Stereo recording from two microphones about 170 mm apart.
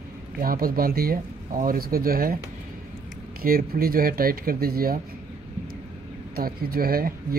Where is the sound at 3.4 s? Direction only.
60° right (ahead or behind).